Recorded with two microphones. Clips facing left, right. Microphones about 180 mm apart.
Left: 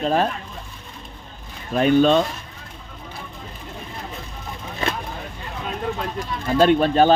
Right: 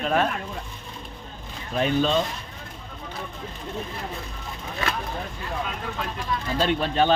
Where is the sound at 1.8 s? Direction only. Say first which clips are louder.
Left 7 dB; 60° left (ahead or behind).